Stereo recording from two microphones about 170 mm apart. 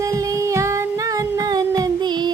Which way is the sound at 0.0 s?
20° right (ahead or behind).